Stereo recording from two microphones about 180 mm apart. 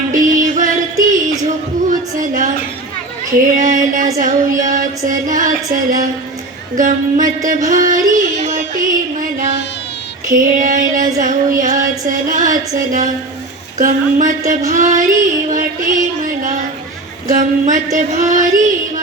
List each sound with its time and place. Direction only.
0.1 s music: 45° right (ahead or behind)
1.0 s a sound: 45° right (ahead or behind)
3.6 s female singing: 45° right (ahead or behind)
7.7 s music: 45° right (ahead or behind)
10.2 s female singing: 45° right (ahead or behind)